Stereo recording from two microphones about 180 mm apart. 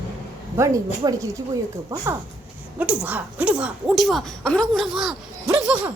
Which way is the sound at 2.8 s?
10° right (ahead or behind).